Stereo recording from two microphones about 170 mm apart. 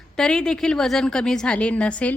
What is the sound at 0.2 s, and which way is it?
Speech, 5° left (ahead or behind).